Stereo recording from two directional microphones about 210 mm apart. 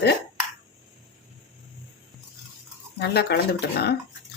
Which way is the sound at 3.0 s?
50° left (ahead or behind).